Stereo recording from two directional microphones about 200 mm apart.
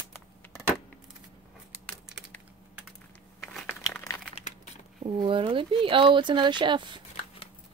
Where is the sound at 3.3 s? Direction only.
5° left (ahead or behind).